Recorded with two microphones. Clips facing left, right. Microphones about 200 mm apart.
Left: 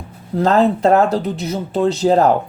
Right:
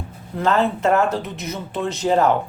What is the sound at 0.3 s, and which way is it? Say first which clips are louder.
Speech: left 5 dB; 40° left (ahead or behind).